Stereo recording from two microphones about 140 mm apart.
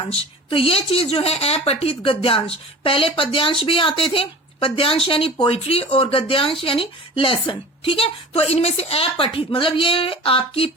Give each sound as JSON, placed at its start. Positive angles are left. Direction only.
{"t": 0.0, "sound": "speech", "side_deg": 40}